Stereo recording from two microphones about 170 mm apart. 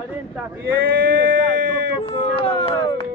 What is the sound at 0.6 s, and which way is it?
Male singing, 70° right (ahead or behind).